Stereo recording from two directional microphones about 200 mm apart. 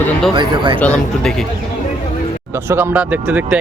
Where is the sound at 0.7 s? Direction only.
5° left (ahead or behind).